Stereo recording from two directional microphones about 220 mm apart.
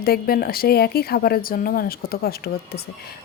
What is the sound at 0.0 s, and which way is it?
A woman's voice, 45° left (ahead or behind).